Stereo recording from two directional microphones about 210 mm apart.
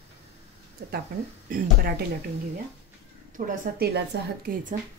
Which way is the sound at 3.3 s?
40° right (ahead or behind).